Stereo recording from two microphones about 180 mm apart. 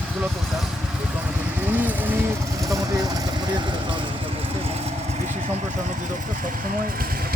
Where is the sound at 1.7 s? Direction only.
10° right (ahead or behind).